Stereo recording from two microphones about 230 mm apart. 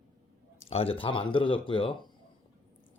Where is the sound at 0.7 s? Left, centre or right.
Left.